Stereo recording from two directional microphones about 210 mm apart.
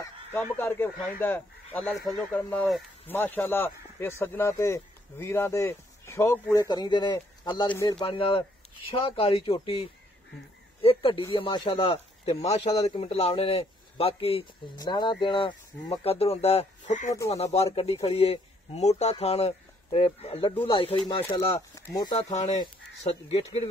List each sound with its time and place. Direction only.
0.0 s goose: 10° left (ahead or behind)
1.2 s speech: 10° left (ahead or behind)
7.6 s speech: 10° left (ahead or behind)
7.9 s speech: 25° left (ahead or behind)
22.3 s speech: 30° left (ahead or behind)